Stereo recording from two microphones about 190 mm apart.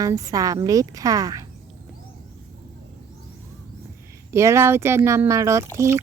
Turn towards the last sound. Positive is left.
turn(degrees=-15)  # may be behind; listen again after turning